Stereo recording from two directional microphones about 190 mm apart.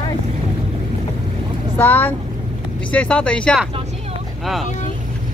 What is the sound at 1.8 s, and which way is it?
Speech, 10° left (ahead or behind).